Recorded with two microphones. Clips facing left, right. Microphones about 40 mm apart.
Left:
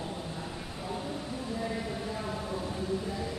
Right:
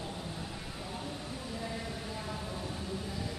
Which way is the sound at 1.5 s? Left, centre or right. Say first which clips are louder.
Left 5 dB; centre.